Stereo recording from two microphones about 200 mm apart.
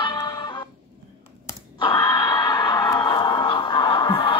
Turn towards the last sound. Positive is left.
turn(degrees=25)  # may be behind; listen again after turning